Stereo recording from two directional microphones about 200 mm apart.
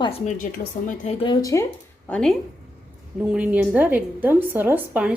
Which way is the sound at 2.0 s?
5° left (ahead or behind).